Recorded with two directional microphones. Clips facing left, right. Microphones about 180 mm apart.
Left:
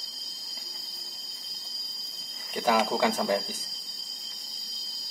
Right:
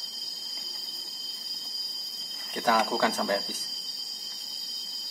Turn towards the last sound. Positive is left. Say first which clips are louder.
# left 1 dB
turn(degrees=15)  # may be behind; listen again after turning